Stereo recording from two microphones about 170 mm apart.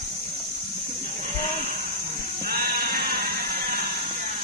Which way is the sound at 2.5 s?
65° right (ahead or behind).